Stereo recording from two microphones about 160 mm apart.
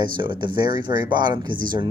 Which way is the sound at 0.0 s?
30° right (ahead or behind).